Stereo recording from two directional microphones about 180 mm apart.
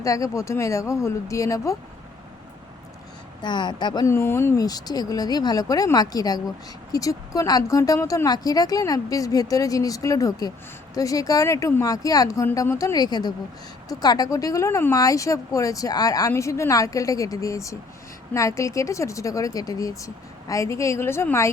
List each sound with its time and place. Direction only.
0.0 s speech: 20° left (ahead or behind)
3.4 s speech: 25° left (ahead or behind)